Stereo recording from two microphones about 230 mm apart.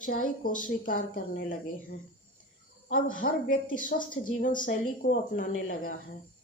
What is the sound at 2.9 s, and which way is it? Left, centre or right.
A woman's voice, left.